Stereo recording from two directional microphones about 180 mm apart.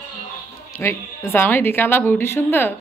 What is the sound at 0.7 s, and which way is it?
A woman's voice, 15° left (ahead or behind).